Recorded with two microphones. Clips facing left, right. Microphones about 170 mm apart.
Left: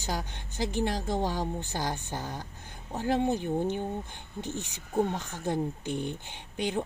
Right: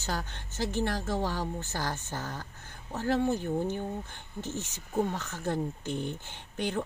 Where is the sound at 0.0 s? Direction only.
15° left (ahead or behind).